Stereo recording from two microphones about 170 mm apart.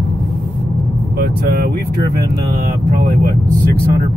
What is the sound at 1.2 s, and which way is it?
Speech, 65° right (ahead or behind).